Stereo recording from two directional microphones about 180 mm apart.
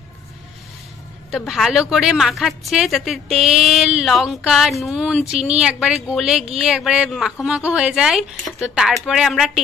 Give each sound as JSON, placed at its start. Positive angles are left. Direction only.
{"t": 1.5, "sound": "a woman's voice", "side_deg": 0}